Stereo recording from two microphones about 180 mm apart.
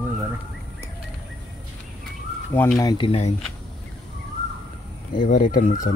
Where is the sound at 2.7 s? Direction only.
25° left (ahead or behind).